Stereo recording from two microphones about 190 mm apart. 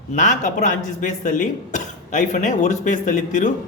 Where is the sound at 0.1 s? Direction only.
40° left (ahead or behind).